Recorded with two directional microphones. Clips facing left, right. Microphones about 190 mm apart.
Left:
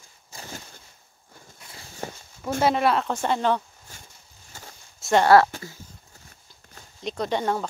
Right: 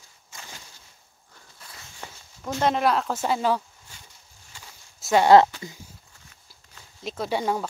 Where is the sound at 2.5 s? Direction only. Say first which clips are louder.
Left 1 dB; 5° left (ahead or behind).